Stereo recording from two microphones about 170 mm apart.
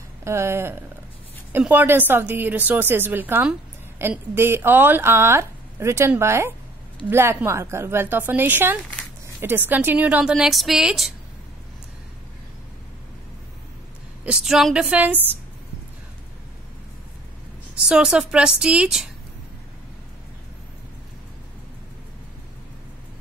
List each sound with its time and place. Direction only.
0.2 s a woman's voice: 15° right (ahead or behind)
14.2 s a woman's voice: 5° right (ahead or behind)
17.8 s a woman's voice: 5° right (ahead or behind)